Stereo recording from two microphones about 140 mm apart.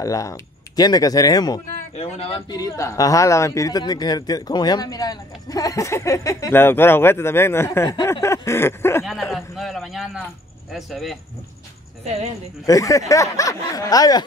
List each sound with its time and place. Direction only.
0.0 s a man's voice: 25° left (ahead or behind)
2.0 s speech: 45° left (ahead or behind)
2.5 s a man's voice: 25° left (ahead or behind)
9.3 s a man's voice: centre (ahead or behind)
12.0 s speech: 50° right (ahead or behind)
12.6 s a man's voice: 25° left (ahead or behind)